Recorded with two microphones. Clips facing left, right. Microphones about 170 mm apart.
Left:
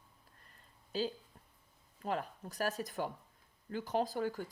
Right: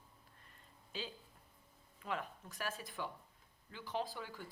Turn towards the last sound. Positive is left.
turn(degrees=45)  # may be behind; listen again after turning